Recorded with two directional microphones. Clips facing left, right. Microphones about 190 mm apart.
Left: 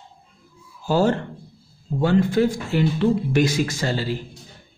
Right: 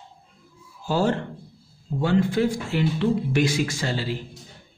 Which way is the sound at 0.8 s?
40° left (ahead or behind).